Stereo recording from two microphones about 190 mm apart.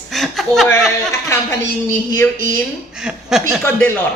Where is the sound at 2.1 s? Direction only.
15° left (ahead or behind).